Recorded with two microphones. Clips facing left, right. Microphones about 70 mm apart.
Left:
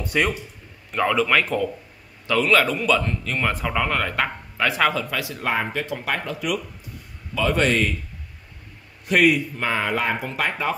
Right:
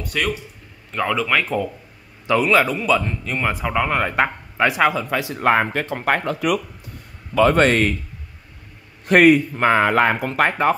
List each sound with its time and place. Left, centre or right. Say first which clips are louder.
0.0 s speech: left 2 dB; centre
0.9 s speech: even; centre
2.2 s a man's voice: right 2 dB; centre
5.4 s speech: right 8 dB; right
9.0 s speech: right 5 dB; right